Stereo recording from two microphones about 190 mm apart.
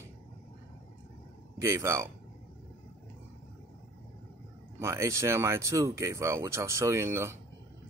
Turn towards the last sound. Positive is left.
turn(degrees=-15)  # may be behind; listen again after turning